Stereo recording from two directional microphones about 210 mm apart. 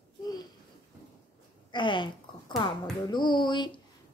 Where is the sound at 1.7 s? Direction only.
20° left (ahead or behind).